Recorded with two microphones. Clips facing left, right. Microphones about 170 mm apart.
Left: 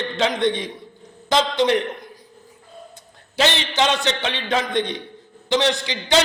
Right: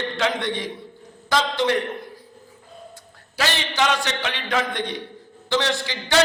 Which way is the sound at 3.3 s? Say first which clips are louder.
Left 4 dB; 25° left (ahead or behind).